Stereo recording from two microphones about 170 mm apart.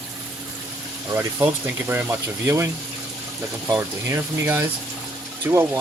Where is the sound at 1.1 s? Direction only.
15° right (ahead or behind).